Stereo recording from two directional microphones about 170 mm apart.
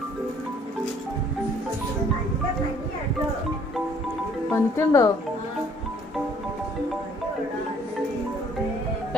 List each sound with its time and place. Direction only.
4.5 s speech: 15° left (ahead or behind)